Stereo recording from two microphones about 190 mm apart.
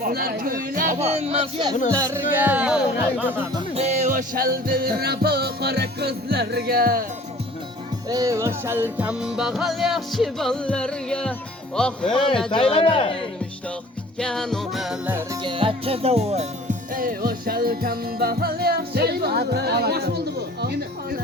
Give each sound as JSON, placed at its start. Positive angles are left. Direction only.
{"t": 0.0, "sound": "speech", "side_deg": -55}
{"t": 2.0, "sound": "speech", "side_deg": -15}
{"t": 3.8, "sound": "music", "side_deg": -35}
{"t": 8.1, "sound": "music", "side_deg": -15}
{"t": 12.7, "sound": "a man's voice", "side_deg": 30}
{"t": 14.2, "sound": "music", "side_deg": 5}
{"t": 15.4, "sound": "music", "side_deg": -25}
{"t": 16.9, "sound": "music", "side_deg": -50}